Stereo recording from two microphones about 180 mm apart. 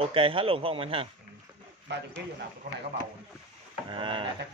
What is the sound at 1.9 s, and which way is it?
Speech, 75° right (ahead or behind).